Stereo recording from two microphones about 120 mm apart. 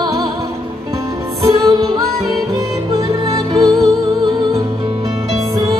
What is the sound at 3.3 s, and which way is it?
Music, 35° right (ahead or behind).